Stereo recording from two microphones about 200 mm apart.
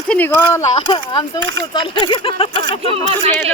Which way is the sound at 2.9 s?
35° right (ahead or behind).